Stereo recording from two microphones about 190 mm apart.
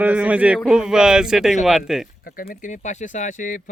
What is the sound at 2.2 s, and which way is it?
Speech, 50° left (ahead or behind).